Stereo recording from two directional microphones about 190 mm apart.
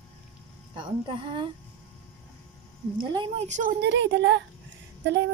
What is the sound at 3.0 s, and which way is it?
Speech, 25° right (ahead or behind).